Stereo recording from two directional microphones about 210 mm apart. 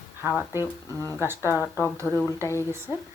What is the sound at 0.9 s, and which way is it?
Speech, 15° left (ahead or behind).